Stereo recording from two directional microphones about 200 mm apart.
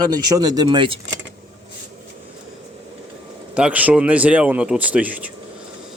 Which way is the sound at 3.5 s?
5° right (ahead or behind).